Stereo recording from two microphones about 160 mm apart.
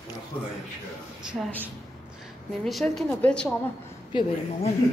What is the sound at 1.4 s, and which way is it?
Speech, 10° right (ahead or behind).